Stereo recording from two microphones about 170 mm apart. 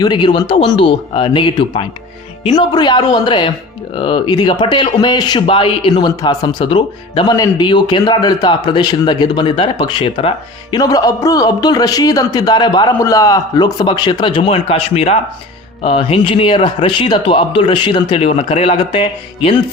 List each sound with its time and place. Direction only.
0.0 s a man's voice: 25° left (ahead or behind)